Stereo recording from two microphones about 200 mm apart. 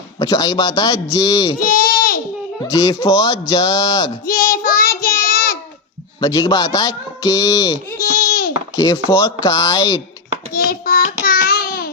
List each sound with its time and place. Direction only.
0.2 s speech: 20° left (ahead or behind)
1.5 s baby cry: 45° left (ahead or behind)
2.6 s speech: 20° left (ahead or behind)
4.3 s child singing: 45° left (ahead or behind)
6.1 s speech: 20° left (ahead or behind)
8.3 s baby cry: 45° left (ahead or behind)
8.7 s speech: 20° left (ahead or behind)
10.5 s a sound: 45° left (ahead or behind)